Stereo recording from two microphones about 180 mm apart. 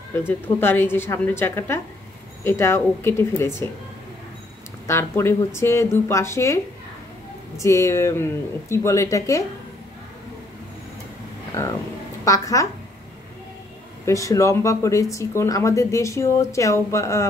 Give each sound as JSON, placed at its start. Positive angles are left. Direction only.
{"t": 0.6, "sound": "speech", "side_deg": 10}
{"t": 4.8, "sound": "speech", "side_deg": 15}
{"t": 12.3, "sound": "speech", "side_deg": 20}
{"t": 14.0, "sound": "speech", "side_deg": 15}